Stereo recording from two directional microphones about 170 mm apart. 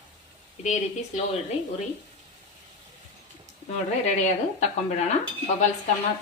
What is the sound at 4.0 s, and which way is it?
Speech, 40° left (ahead or behind).